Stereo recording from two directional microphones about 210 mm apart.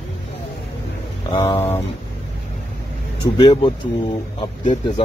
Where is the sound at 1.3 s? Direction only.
20° left (ahead or behind).